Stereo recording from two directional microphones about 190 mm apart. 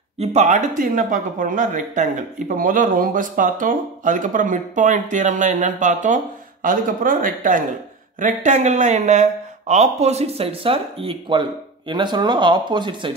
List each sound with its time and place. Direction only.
0.2 s speech: 35° right (ahead or behind)